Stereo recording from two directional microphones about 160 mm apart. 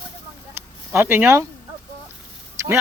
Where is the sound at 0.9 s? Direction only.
10° right (ahead or behind).